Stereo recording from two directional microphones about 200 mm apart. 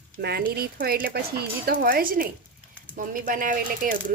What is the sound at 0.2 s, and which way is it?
Speech, 50° right (ahead or behind).